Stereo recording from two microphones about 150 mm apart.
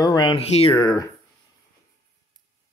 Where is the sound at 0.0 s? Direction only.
30° left (ahead or behind).